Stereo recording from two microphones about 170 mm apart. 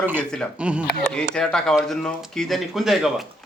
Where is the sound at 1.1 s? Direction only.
5° left (ahead or behind).